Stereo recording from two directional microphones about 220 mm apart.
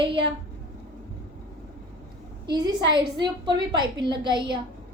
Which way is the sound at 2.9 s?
20° right (ahead or behind).